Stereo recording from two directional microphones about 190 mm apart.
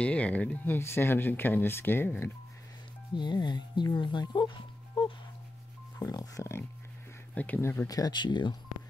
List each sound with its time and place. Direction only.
0.0 s speech: 5° left (ahead or behind)
3.2 s speech: 25° left (ahead or behind)